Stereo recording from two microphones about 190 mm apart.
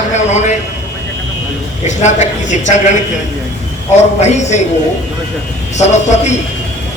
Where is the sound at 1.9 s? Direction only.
40° left (ahead or behind).